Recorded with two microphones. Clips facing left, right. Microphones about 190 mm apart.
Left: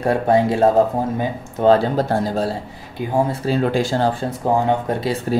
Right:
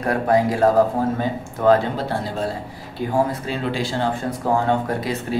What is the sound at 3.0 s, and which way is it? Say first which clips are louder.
Speech: even; 15° left (ahead or behind).